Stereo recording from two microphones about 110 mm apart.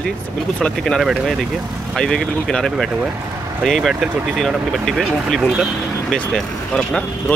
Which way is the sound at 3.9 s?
10° right (ahead or behind).